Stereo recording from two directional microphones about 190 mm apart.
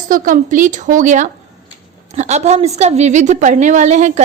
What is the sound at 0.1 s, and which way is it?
A woman's voice, 45° right (ahead or behind).